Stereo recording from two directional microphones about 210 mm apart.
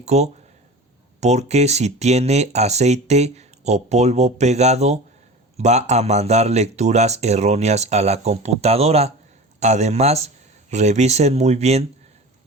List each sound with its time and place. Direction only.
0.0 s speech: 30° right (ahead or behind)